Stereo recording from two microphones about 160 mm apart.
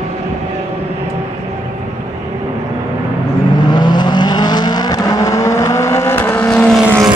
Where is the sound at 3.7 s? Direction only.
25° left (ahead or behind); by 7.0 s centre (ahead or behind).